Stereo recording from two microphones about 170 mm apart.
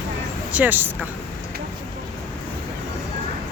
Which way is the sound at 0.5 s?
10° right (ahead or behind).